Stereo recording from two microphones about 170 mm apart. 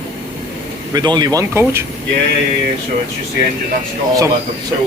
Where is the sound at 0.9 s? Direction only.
25° right (ahead or behind).